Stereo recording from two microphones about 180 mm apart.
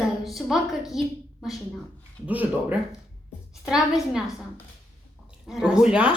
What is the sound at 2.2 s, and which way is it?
A woman's voice, 10° right (ahead or behind).